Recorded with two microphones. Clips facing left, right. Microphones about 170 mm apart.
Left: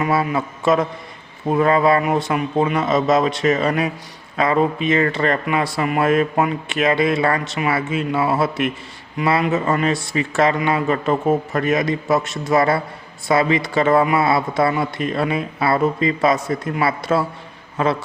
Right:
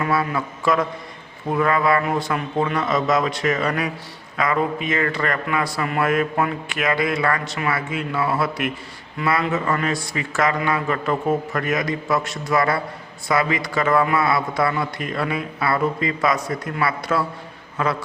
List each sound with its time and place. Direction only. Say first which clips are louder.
0.0 s a man's voice: left 3 dB; 20° left (ahead or behind)